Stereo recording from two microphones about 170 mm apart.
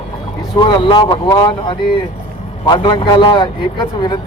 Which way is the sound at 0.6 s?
25° left (ahead or behind).